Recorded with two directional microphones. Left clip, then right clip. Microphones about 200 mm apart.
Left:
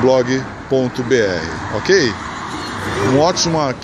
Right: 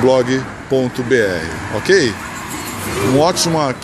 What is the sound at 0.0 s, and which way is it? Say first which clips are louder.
Speech: right 1 dB; 5° right (ahead or behind).